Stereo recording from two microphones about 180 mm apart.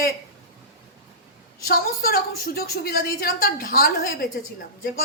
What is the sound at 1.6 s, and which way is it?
A woman's voice, 55° left (ahead or behind).